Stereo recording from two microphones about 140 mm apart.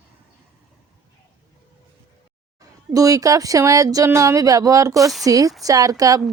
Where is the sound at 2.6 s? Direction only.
25° right (ahead or behind).